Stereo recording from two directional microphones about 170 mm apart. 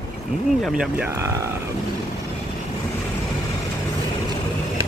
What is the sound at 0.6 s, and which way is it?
Speech, 5° right (ahead or behind).